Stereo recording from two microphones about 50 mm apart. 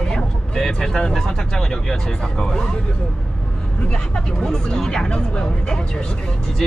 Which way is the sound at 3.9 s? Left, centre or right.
Centre.